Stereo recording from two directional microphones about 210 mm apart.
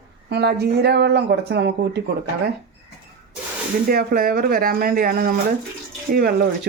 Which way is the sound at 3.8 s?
45° right (ahead or behind).